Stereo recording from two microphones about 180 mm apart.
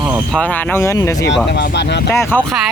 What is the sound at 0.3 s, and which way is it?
Speech, 5° left (ahead or behind).